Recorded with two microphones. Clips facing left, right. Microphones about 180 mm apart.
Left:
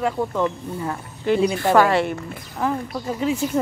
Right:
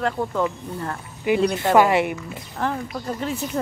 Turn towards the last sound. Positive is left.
turn(degrees=5)  # may be behind; listen again after turning